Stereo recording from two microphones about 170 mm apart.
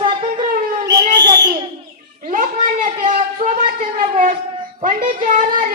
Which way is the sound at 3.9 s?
50° right (ahead or behind).